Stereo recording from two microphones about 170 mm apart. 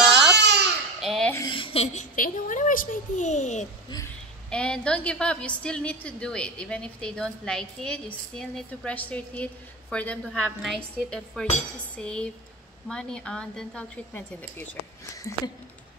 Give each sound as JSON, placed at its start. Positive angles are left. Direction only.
{"t": 0.0, "sound": "baby cry", "side_deg": -5}
{"t": 0.4, "sound": "baby cry", "side_deg": -80}
{"t": 1.0, "sound": "a sound", "side_deg": 0}
{"t": 1.5, "sound": "a sound", "side_deg": 30}
{"t": 2.1, "sound": "a woman's voice", "side_deg": 55}
{"t": 4.5, "sound": "a woman's voice", "side_deg": 5}